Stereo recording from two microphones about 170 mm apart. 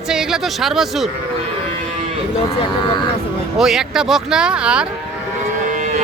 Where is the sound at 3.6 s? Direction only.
5° right (ahead or behind).